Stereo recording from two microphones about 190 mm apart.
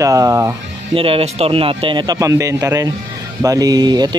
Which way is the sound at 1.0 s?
30° right (ahead or behind).